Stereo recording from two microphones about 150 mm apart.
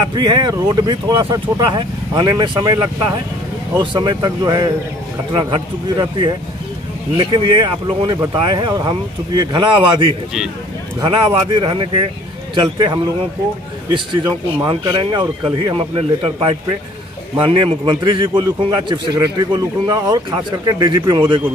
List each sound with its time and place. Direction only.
0.0 s a man's voice: 30° right (ahead or behind)
14.6 s a man's voice: 30° right (ahead or behind)